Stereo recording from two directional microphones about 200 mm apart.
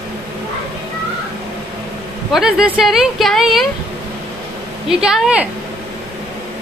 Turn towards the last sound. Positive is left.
turn(degrees=-5)  # may be behind; listen again after turning